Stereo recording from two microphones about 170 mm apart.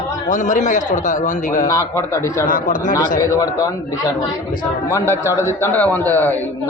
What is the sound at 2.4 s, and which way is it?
Speech, 50° left (ahead or behind).